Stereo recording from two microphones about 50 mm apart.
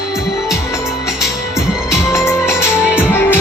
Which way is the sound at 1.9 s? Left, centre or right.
Left.